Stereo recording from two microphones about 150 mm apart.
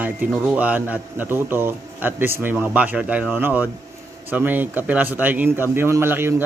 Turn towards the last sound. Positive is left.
turn(degrees=-15)  # may be behind; listen again after turning